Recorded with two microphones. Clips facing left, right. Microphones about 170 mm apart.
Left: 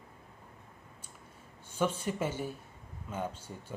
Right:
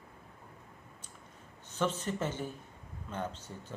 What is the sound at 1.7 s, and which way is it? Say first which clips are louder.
Speech: left 1 dB; 10° left (ahead or behind).